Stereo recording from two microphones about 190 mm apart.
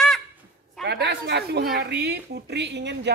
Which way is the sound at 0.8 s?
65° right (ahead or behind).